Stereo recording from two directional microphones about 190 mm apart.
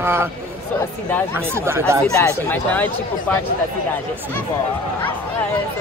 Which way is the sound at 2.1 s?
10° left (ahead or behind).